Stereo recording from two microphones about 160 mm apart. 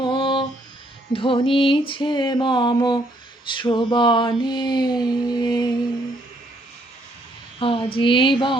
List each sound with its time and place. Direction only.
0.0 s music: 30° left (ahead or behind)
1.1 s mantra: 35° left (ahead or behind)
7.6 s speech: 35° left (ahead or behind)